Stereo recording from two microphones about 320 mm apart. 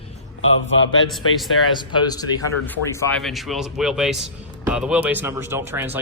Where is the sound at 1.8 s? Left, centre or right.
Centre.